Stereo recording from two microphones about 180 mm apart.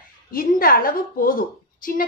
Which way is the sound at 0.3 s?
55° left (ahead or behind).